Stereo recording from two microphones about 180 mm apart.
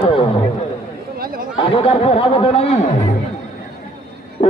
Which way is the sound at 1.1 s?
55° right (ahead or behind).